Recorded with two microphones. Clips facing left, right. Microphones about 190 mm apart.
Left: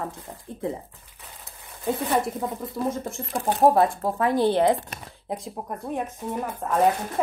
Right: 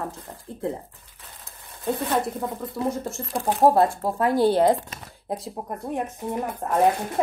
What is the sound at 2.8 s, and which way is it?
Speech, centre (ahead or behind).